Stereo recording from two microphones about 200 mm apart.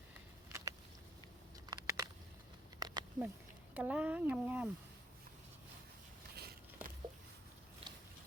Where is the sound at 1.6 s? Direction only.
20° right (ahead or behind).